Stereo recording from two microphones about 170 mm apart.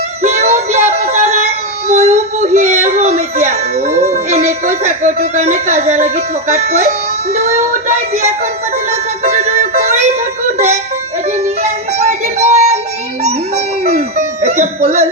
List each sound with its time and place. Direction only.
0.2 s child singing: 40° right (ahead or behind)
7.3 s speech: 40° right (ahead or behind)
8.9 s music: 40° right (ahead or behind)
11.4 s music: 40° right (ahead or behind)
13.8 s music: 40° right (ahead or behind)